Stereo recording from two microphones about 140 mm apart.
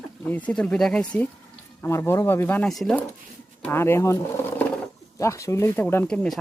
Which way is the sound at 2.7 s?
5° left (ahead or behind).